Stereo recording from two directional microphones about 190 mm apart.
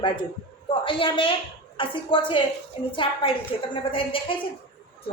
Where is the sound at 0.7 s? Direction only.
25° left (ahead or behind).